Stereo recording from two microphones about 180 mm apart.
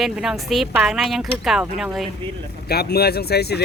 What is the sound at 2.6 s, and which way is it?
Speech, 60° left (ahead or behind).